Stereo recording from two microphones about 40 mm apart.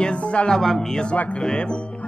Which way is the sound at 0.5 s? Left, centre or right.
Centre.